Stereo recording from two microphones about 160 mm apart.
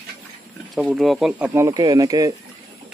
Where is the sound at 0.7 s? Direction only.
Centre (ahead or behind).